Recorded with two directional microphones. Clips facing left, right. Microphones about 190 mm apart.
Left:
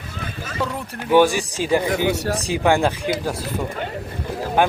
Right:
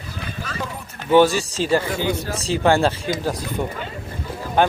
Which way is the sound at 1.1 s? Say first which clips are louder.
Right 1 dB; 15° left (ahead or behind).